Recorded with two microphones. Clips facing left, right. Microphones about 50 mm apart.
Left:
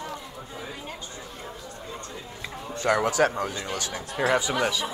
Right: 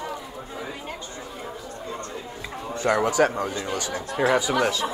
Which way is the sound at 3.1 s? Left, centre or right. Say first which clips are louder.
Right 2 dB; centre.